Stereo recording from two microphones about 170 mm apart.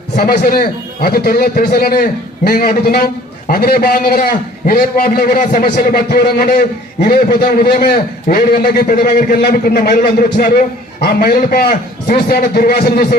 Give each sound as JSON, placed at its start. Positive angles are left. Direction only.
{"t": 0.2, "sound": "a man's voice", "side_deg": 60}